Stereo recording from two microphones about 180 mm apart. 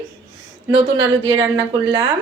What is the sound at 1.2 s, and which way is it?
Speech, 25° right (ahead or behind).